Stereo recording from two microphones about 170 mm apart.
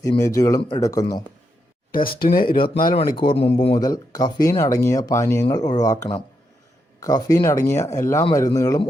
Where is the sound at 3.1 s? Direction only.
30° left (ahead or behind).